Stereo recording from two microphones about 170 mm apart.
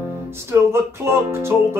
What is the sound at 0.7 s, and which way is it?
Speech, 15° right (ahead or behind).